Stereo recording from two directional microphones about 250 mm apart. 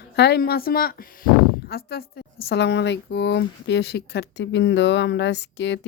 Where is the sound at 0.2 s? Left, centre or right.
Left.